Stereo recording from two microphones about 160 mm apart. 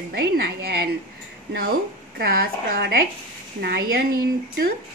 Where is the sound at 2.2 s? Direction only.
70° right (ahead or behind).